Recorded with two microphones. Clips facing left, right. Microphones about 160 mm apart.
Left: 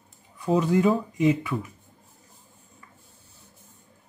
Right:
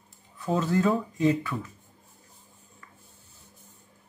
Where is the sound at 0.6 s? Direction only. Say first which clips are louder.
Left 3 dB; 15° left (ahead or behind).